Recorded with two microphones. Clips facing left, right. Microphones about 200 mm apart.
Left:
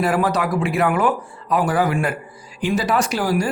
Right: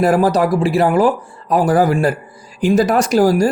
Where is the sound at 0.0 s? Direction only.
40° right (ahead or behind).